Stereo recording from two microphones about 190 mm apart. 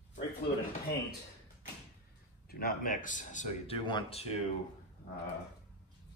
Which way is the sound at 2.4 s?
50° left (ahead or behind).